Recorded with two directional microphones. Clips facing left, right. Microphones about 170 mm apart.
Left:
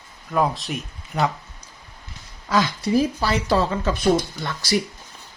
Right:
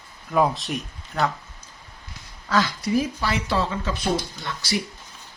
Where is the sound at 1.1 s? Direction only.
10° left (ahead or behind).